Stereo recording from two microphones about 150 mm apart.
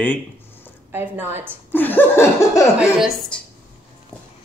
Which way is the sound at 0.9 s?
15° right (ahead or behind).